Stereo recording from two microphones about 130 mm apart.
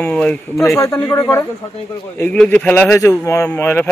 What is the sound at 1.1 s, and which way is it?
Speech, 25° left (ahead or behind).